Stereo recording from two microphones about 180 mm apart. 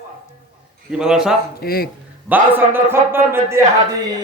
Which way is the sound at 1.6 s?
55° left (ahead or behind).